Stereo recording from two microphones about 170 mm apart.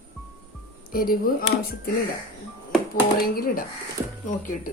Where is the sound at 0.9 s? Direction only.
60° left (ahead or behind).